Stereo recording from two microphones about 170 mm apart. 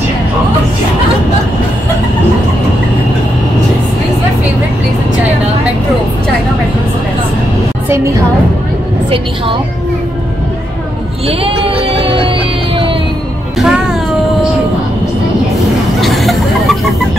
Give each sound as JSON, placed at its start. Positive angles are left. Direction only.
{"t": 11.2, "sound": "a sound", "side_deg": -35}
{"t": 13.6, "sound": "music", "side_deg": -5}
{"t": 16.0, "sound": "vehicle", "side_deg": 0}